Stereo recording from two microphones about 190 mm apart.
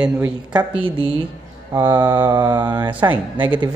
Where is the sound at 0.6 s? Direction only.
25° right (ahead or behind).